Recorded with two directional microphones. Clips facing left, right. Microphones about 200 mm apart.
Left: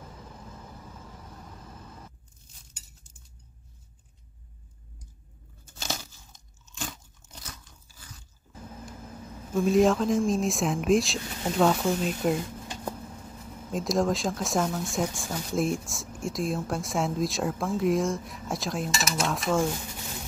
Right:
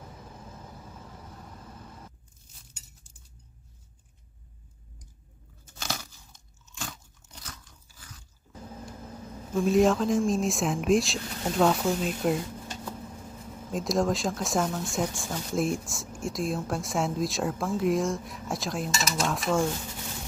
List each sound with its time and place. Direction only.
9.5 s speech: centre (ahead or behind)
13.7 s speech: centre (ahead or behind)